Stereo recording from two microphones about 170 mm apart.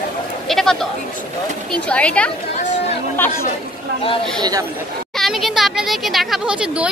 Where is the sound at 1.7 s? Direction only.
5° left (ahead or behind).